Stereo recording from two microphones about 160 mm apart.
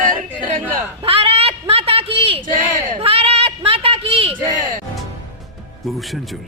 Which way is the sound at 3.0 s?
40° right (ahead or behind).